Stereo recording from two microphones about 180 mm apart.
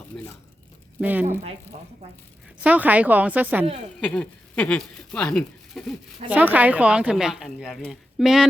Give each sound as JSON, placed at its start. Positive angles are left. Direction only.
{"t": 0.1, "sound": "a sound", "side_deg": 10}
{"t": 1.0, "sound": "speech", "side_deg": -10}
{"t": 1.7, "sound": "speech", "side_deg": -35}
{"t": 2.6, "sound": "speech", "side_deg": -10}
{"t": 4.0, "sound": "speech", "side_deg": 5}
{"t": 6.2, "sound": "speech", "side_deg": -10}